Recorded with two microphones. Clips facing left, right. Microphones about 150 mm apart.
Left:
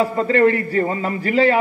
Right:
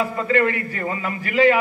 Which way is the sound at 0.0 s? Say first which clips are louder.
Left 4 dB; 35° left (ahead or behind).